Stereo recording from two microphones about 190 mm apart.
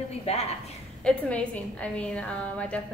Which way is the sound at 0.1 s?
35° left (ahead or behind).